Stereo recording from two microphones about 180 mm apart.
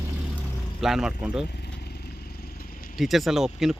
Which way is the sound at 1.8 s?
65° left (ahead or behind).